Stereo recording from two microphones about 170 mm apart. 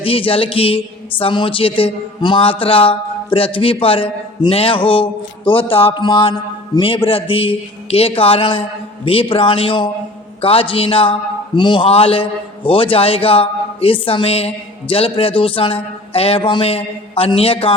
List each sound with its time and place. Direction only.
0.0 s a man's voice: 35° left (ahead or behind)